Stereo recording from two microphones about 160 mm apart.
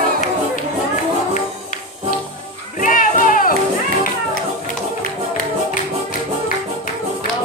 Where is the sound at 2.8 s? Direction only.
55° left (ahead or behind).